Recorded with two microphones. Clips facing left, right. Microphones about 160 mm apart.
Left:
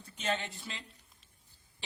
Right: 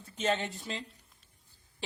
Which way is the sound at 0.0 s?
40° right (ahead or behind).